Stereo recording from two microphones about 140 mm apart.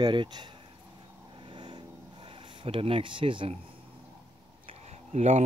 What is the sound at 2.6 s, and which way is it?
Speech, 45° right (ahead or behind).